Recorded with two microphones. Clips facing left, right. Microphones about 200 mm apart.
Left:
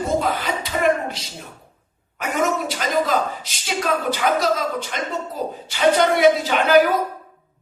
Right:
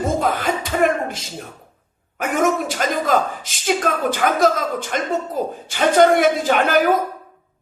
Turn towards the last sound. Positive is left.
turn(degrees=-50)  # may be behind; listen again after turning